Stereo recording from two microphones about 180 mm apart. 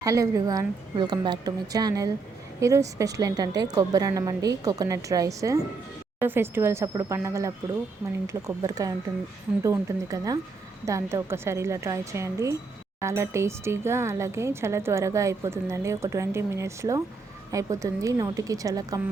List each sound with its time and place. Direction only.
0.0 s a woman's voice: 20° right (ahead or behind)